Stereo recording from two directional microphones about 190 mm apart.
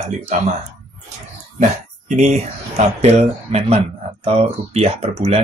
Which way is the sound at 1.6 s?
40° right (ahead or behind).